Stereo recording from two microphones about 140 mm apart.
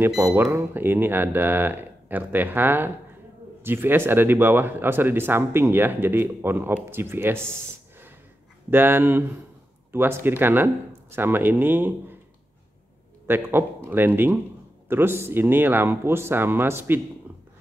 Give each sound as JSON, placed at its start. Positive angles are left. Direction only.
{"t": 0.0, "sound": "speech", "side_deg": -15}
{"t": 8.6, "sound": "speech", "side_deg": -15}
{"t": 13.3, "sound": "speech", "side_deg": -15}